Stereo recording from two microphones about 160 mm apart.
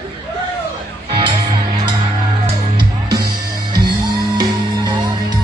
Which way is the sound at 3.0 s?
75° right (ahead or behind).